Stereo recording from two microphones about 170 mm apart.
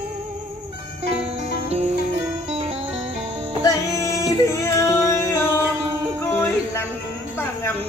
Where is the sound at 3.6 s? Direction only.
20° left (ahead or behind).